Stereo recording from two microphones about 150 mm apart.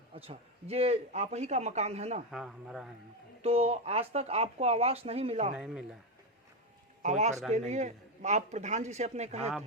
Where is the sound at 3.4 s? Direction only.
40° right (ahead or behind).